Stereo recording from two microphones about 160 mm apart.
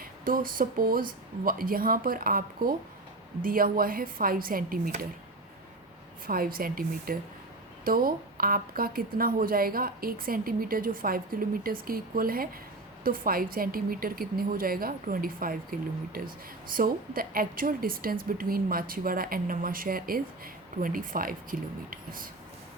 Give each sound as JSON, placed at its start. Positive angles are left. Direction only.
{"t": 0.0, "sound": "a woman's voice", "side_deg": -60}
{"t": 6.2, "sound": "a woman's voice", "side_deg": -65}
{"t": 16.7, "sound": "a woman's voice", "side_deg": -65}